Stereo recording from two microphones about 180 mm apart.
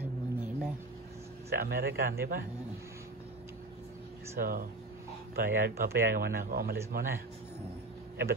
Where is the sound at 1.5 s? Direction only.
60° right (ahead or behind).